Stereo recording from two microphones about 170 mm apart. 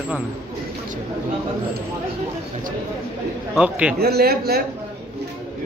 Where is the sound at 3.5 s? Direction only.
5° right (ahead or behind).